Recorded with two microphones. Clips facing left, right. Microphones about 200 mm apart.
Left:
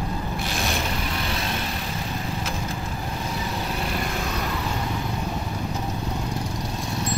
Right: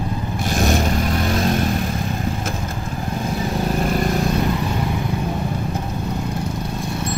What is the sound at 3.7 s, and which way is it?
Vehicle, 45° right (ahead or behind).